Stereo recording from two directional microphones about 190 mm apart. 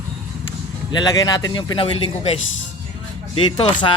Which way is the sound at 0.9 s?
20° left (ahead or behind).